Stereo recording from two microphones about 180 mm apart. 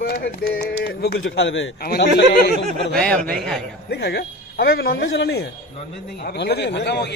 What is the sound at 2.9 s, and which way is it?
Speech, 5° left (ahead or behind).